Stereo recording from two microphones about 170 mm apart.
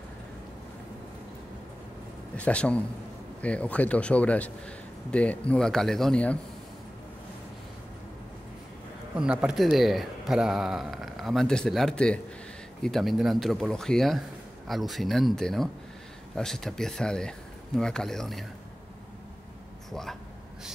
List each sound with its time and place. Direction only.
2.3 s speech: 5° left (ahead or behind)
9.1 s speech: 5° right (ahead or behind)
19.9 s speech: centre (ahead or behind)